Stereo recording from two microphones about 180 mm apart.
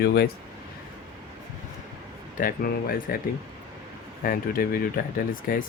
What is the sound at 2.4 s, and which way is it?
Speech, 50° left (ahead or behind).